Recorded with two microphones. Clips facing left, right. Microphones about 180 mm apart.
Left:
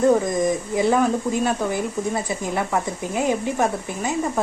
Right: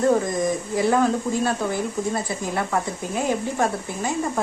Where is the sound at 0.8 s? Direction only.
20° left (ahead or behind).